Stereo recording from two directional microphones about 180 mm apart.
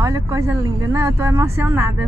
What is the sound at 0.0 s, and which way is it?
A woman's voice, 15° right (ahead or behind).